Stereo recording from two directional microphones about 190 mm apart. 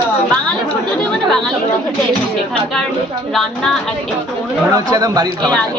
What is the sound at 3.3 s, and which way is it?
Speech, centre (ahead or behind).